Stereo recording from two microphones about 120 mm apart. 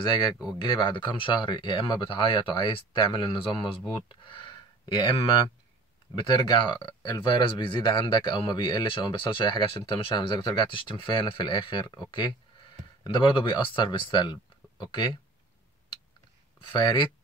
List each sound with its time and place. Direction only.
0.6 s speech: 45° left (ahead or behind)
4.1 s a sound: 45° left (ahead or behind)
6.1 s speech: 40° left (ahead or behind)
13.0 s speech: 40° left (ahead or behind)
16.7 s speech: 40° left (ahead or behind)